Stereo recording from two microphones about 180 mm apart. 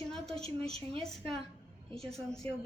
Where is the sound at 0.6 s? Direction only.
35° right (ahead or behind).